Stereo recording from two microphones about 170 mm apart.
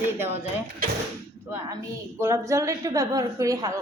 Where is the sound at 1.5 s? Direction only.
15° right (ahead or behind).